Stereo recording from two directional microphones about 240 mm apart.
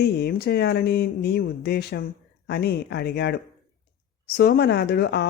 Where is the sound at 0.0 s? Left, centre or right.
Left.